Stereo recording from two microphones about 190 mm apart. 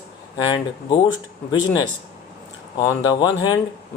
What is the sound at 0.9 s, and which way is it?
Speech, 25° left (ahead or behind).